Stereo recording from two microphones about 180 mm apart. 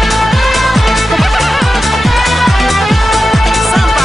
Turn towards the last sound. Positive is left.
turn(degrees=0)  # may be behind; listen again after turning